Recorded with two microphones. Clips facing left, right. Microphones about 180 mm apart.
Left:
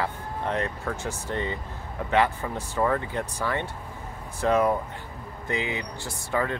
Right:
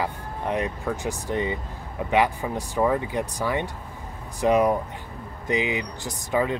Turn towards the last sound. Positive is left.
turn(degrees=-15)  # may be behind; listen again after turning